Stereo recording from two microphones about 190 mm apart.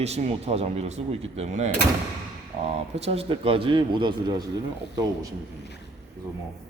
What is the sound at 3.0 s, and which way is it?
Speech, 30° right (ahead or behind).